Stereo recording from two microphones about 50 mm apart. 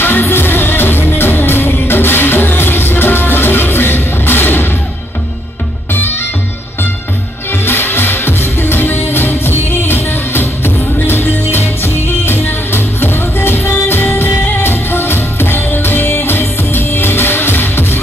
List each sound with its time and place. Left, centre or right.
0.0 s music: left
7.6 s music: left